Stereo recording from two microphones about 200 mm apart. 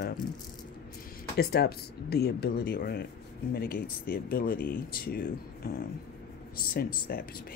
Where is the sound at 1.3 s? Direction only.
55° left (ahead or behind).